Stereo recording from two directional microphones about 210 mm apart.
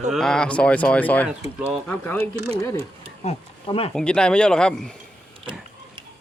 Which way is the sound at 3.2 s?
30° left (ahead or behind).